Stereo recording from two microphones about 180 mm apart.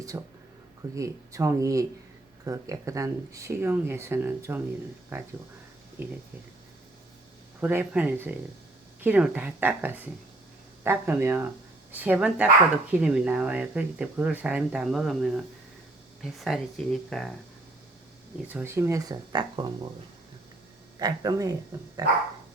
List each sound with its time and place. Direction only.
0.1 s speech: 15° right (ahead or behind)
7.6 s speech: 10° right (ahead or behind)
18.4 s speech: 10° right (ahead or behind)
21.0 s speech: 20° right (ahead or behind)